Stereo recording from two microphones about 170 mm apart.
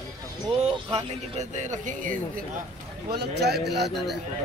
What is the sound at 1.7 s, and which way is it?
Speech, 50° right (ahead or behind).